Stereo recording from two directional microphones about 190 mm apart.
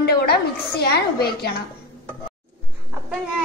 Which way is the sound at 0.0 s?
55° left (ahead or behind).